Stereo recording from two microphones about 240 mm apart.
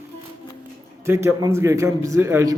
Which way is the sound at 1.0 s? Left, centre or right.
Centre.